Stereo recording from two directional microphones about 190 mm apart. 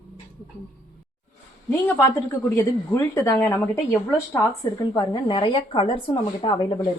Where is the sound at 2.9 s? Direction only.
15° left (ahead or behind).